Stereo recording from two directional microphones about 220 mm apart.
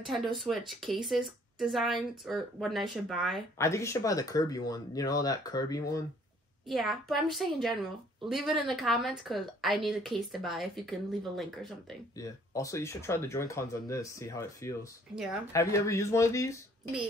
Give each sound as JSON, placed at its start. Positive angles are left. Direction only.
{"t": 0.0, "sound": "a woman's voice", "side_deg": 0}
{"t": 3.5, "sound": "speech", "side_deg": 15}
{"t": 6.7, "sound": "a woman's voice", "side_deg": 0}
{"t": 12.2, "sound": "speech", "side_deg": 15}